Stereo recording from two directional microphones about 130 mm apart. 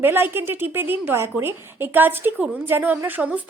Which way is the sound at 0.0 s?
15° right (ahead or behind).